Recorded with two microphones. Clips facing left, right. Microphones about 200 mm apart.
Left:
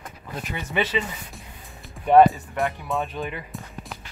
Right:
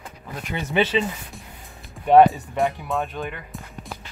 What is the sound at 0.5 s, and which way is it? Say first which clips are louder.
Speech: right 4 dB; 25° right (ahead or behind).